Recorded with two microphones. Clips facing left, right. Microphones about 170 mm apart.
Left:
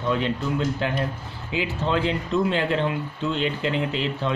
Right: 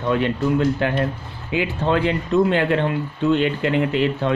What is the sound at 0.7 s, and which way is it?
Speech, 60° right (ahead or behind).